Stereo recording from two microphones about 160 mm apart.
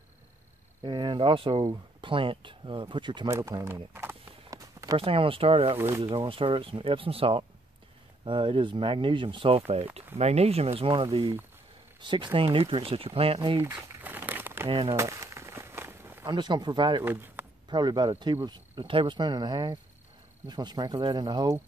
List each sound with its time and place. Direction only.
0.8 s speech: 30° right (ahead or behind)
3.3 s a sound: 15° right (ahead or behind)
4.9 s speech: 35° right (ahead or behind)
5.8 s speech: 15° right (ahead or behind)
6.0 s speech: 35° right (ahead or behind)
13.6 s crumpling: 15° right (ahead or behind)
14.7 s speech: 35° right (ahead or behind)
15.0 s a sound: 20° right (ahead or behind)
16.3 s speech: 30° right (ahead or behind)
17.0 s speech: 10° right (ahead or behind)
17.6 s speech: 30° right (ahead or behind)